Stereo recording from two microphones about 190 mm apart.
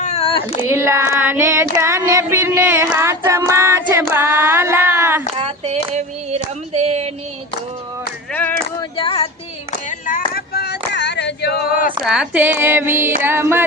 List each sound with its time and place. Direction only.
0.0 s baby cry: 35° left (ahead or behind)
0.6 s child singing: 15° right (ahead or behind)
5.4 s female singing: 35° right (ahead or behind)
8.3 s clapping: 10° left (ahead or behind)
9.0 s child singing: 30° left (ahead or behind)
10.1 s female singing: 50° left (ahead or behind)
12.0 s a sound: 5° right (ahead or behind)